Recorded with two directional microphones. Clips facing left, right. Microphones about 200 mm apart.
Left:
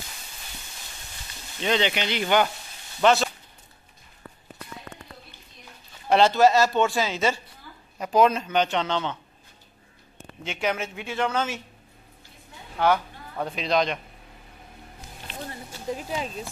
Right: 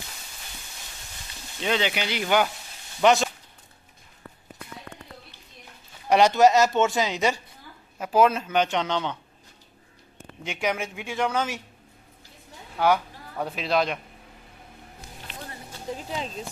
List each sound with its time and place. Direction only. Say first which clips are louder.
1.6 s speech: left 1 dB; 5° right (ahead or behind)
6.0 s speech: even; 15° right (ahead or behind)
8.0 s speech: even; 5° right (ahead or behind)
10.4 s speech: even; 10° right (ahead or behind)
12.7 s speech: even; 10° right (ahead or behind)
16.0 s speech: left 2 dB; 10° left (ahead or behind)